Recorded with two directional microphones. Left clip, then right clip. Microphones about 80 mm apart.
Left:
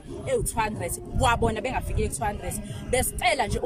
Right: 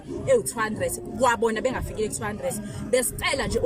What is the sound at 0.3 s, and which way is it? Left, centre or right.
Speech, left.